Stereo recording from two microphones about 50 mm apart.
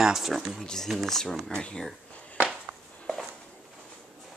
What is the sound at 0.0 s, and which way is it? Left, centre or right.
Speech, centre.